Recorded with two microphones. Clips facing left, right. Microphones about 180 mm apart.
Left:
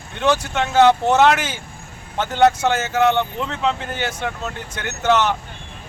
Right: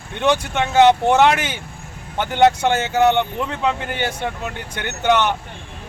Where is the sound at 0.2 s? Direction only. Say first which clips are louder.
Right 1 dB; 15° right (ahead or behind).